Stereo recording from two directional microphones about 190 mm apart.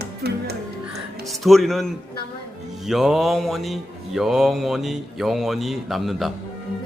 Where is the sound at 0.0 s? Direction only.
55° right (ahead or behind).